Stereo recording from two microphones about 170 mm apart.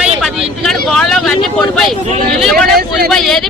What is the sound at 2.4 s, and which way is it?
Speech, centre (ahead or behind).